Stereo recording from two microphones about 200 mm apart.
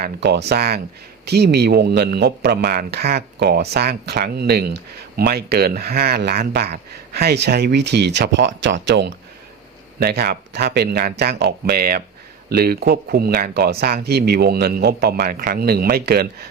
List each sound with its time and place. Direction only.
0.0 s speech: 55° right (ahead or behind)
10.0 s speech: 50° right (ahead or behind)